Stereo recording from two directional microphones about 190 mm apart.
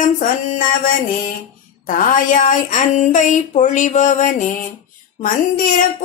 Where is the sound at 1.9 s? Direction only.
45° left (ahead or behind).